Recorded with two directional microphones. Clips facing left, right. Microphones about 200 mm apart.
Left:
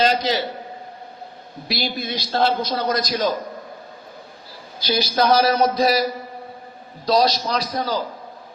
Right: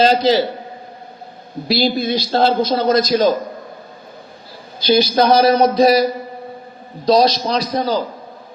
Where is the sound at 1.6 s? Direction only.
30° right (ahead or behind).